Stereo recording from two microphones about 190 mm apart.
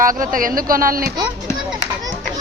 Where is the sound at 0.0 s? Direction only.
45° right (ahead or behind).